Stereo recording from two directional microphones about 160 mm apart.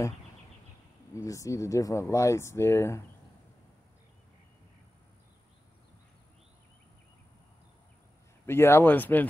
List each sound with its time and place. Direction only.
1.1 s speech: 20° left (ahead or behind)
8.5 s speech: 15° left (ahead or behind)